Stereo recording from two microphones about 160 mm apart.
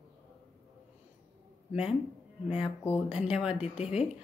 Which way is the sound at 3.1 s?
5° right (ahead or behind).